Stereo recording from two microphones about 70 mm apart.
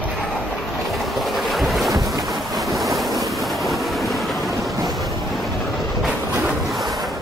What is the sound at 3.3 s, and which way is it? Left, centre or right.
Train, centre.